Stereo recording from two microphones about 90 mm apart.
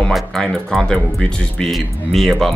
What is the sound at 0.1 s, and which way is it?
Speech, 5° left (ahead or behind).